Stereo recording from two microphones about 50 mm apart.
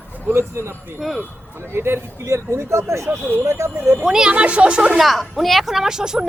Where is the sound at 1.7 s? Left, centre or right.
Right.